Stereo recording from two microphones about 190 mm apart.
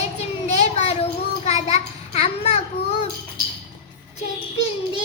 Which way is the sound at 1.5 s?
35° left (ahead or behind).